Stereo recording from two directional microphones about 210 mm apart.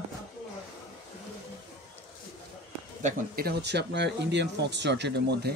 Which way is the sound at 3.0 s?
45° right (ahead or behind).